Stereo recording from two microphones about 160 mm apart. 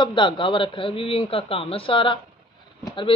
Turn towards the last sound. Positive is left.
turn(degrees=30)  # may be behind; listen again after turning